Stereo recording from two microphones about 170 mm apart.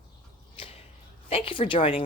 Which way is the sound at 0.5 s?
35° left (ahead or behind).